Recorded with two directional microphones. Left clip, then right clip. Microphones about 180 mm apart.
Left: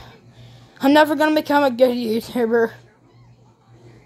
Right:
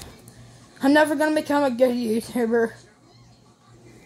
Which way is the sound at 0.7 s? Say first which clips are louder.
Left 4 dB; 25° left (ahead or behind).